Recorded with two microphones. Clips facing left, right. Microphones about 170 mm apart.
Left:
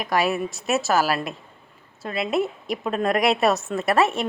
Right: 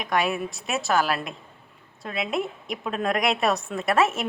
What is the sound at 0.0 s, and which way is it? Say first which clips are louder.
A woman's voice: left 2 dB; centre (ahead or behind).